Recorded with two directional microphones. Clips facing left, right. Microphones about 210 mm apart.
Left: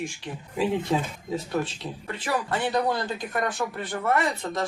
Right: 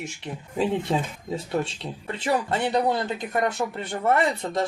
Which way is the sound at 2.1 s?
25° right (ahead or behind).